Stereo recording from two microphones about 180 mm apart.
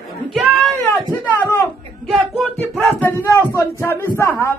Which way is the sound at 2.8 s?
10° left (ahead or behind).